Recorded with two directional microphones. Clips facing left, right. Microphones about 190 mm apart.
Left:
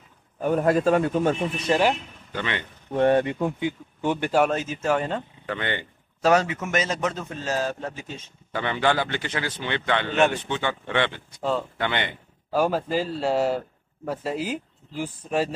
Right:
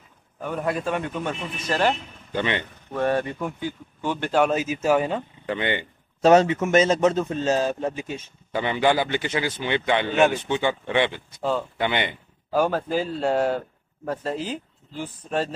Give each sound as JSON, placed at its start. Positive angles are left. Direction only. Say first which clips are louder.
{"t": 0.4, "sound": "a man's voice", "louder": "left 6 dB", "side_deg": 40}
{"t": 1.7, "sound": "speech", "louder": "left 1 dB", "side_deg": 10}
{"t": 2.3, "sound": "a man's voice", "louder": "right 4 dB", "side_deg": -20}
{"t": 2.9, "sound": "speech", "louder": "left 4 dB", "side_deg": 20}
{"t": 4.5, "sound": "a man's voice", "louder": "right 3 dB", "side_deg": -10}
{"t": 12.5, "sound": "speech", "louder": "right 1 dB", "side_deg": 5}